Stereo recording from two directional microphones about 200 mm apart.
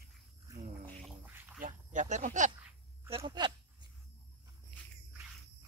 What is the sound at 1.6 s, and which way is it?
Wild animals, 40° right (ahead or behind).